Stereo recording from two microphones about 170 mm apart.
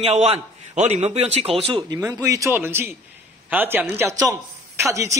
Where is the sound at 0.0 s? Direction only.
35° right (ahead or behind).